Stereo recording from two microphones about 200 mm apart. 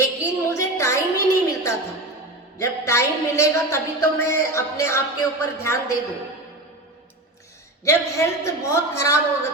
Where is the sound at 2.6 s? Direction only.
15° left (ahead or behind).